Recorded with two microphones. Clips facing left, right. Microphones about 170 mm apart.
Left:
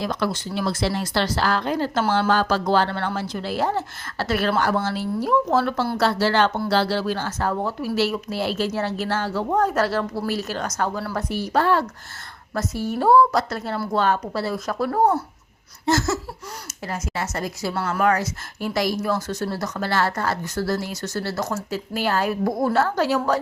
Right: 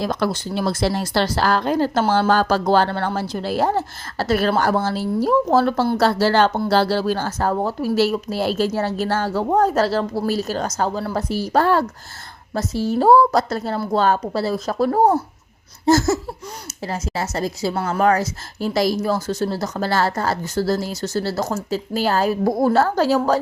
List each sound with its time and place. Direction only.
0.0 s a woman's voice: 40° right (ahead or behind)
16.8 s a woman's voice: 30° right (ahead or behind)